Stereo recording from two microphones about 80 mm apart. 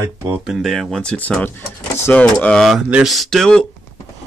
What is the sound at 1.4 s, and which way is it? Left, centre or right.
Speech, left.